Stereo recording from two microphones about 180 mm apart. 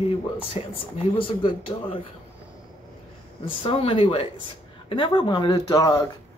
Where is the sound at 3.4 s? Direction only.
30° left (ahead or behind).